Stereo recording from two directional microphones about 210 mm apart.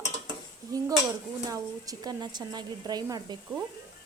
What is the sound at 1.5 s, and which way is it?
A woman's voice, 15° right (ahead or behind).